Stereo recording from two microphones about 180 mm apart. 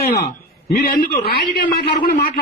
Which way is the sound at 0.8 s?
60° left (ahead or behind).